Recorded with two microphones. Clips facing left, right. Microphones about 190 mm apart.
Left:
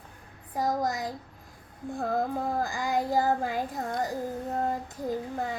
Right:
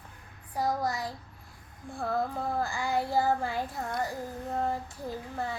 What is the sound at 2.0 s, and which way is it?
Child singing, 15° left (ahead or behind).